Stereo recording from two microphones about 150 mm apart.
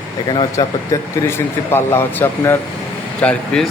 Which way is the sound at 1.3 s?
15° left (ahead or behind).